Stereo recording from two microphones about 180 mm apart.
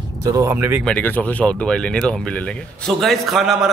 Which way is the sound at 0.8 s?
10° left (ahead or behind).